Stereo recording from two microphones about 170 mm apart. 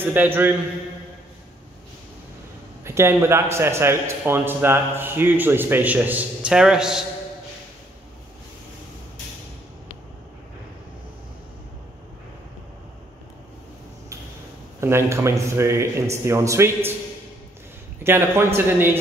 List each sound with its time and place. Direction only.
0.0 s a man's voice: 10° right (ahead or behind)
2.8 s a man's voice: 15° right (ahead or behind)
14.8 s a man's voice: 15° right (ahead or behind)
18.0 s a man's voice: 15° right (ahead or behind)